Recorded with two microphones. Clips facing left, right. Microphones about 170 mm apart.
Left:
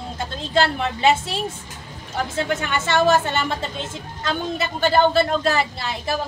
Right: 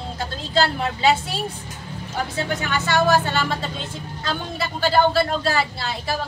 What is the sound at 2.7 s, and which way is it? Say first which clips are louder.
A woman's voice: left 1 dB; 25° left (ahead or behind).